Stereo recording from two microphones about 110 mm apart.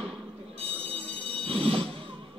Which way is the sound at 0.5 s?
60° right (ahead or behind).